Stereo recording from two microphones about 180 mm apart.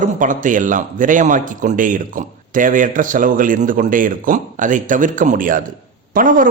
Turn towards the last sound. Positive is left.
turn(degrees=-50)  # may be behind; listen again after turning